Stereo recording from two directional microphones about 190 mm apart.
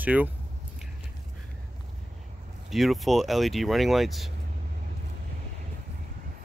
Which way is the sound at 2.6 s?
Centre (ahead or behind).